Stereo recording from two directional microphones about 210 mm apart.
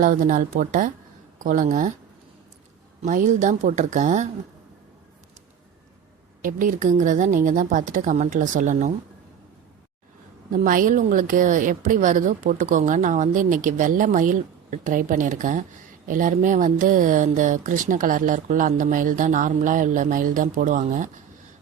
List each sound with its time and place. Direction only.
0.0 s a woman's voice: 40° right (ahead or behind)
3.0 s a woman's voice: 35° right (ahead or behind)
6.4 s a woman's voice: 40° right (ahead or behind)
10.5 s a woman's voice: 40° right (ahead or behind)